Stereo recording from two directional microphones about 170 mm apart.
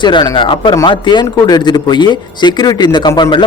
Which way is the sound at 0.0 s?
30° left (ahead or behind).